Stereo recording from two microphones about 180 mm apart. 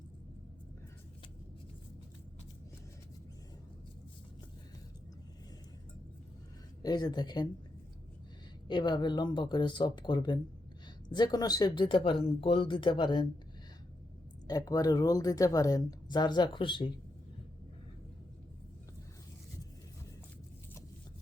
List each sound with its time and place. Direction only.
6.8 s a woman's voice: 25° left (ahead or behind)
8.6 s a woman's voice: 25° left (ahead or behind)
14.4 s a woman's voice: 20° left (ahead or behind)